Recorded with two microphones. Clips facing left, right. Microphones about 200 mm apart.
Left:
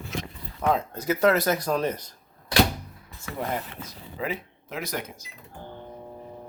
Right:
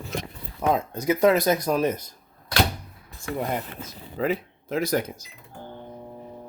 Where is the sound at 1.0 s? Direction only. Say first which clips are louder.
Right 2 dB; 10° right (ahead or behind).